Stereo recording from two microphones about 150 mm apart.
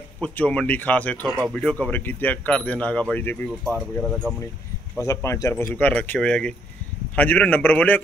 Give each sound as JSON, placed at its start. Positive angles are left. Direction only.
{"t": 0.2, "sound": "speech", "side_deg": 10}
{"t": 4.0, "sound": "speech", "side_deg": 0}
{"t": 4.9, "sound": "speech", "side_deg": 20}